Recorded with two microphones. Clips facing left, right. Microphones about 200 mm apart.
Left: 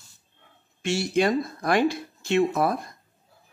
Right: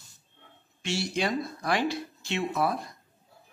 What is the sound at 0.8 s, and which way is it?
Speech, 50° left (ahead or behind).